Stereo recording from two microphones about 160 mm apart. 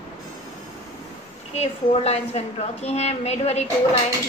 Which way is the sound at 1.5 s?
40° left (ahead or behind).